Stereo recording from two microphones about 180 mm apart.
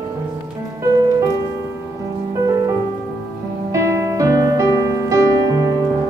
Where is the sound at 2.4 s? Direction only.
20° right (ahead or behind).